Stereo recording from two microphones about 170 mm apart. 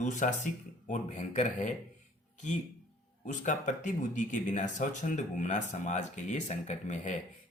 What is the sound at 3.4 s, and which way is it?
Speech, 50° left (ahead or behind).